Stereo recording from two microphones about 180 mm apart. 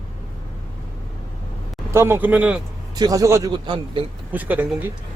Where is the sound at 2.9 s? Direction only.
20° right (ahead or behind).